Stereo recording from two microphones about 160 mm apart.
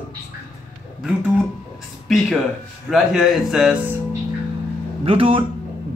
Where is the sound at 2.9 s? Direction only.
Centre (ahead or behind).